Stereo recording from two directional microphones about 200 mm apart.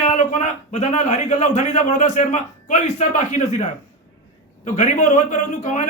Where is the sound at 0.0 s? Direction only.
35° left (ahead or behind).